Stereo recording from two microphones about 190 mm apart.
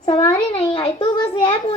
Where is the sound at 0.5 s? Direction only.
30° left (ahead or behind).